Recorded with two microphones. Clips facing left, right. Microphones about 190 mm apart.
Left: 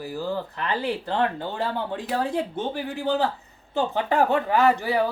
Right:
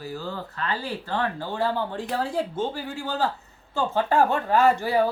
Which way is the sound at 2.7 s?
20° left (ahead or behind).